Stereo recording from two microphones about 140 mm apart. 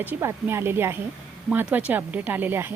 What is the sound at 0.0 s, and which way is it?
A woman's voice, 15° right (ahead or behind).